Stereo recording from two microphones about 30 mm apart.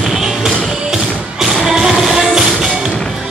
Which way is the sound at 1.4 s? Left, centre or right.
Centre.